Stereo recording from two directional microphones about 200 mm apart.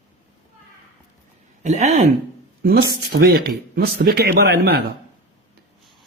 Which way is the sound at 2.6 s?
50° right (ahead or behind).